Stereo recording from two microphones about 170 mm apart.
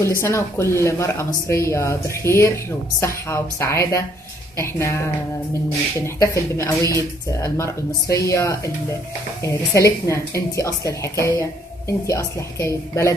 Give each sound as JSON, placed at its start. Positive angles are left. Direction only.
{"t": 0.2, "sound": "speech", "side_deg": 15}